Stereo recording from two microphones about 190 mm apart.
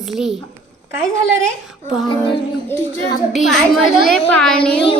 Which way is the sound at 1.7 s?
Centre (ahead or behind).